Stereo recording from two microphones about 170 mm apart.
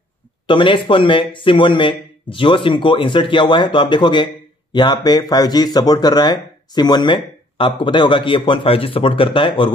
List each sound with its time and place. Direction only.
0.5 s speech: 30° left (ahead or behind)